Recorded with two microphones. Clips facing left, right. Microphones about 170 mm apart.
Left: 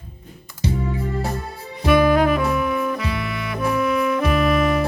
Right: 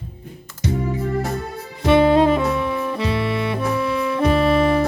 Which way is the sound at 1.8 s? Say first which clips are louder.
Right 2 dB; 25° right (ahead or behind).